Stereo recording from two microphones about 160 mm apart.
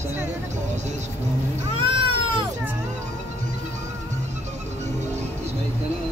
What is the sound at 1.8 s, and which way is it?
Cat, 30° right (ahead or behind).